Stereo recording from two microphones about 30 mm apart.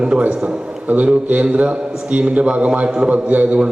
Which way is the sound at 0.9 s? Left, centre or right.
Right.